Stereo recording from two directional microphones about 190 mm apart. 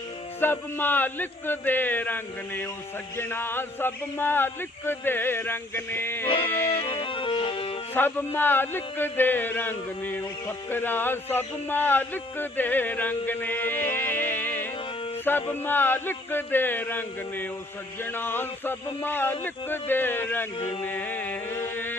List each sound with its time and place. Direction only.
0.3 s speech: 10° left (ahead or behind)
6.9 s music: 25° left (ahead or behind)
7.9 s speech: 10° left (ahead or behind)
20.8 s music: 10° left (ahead or behind)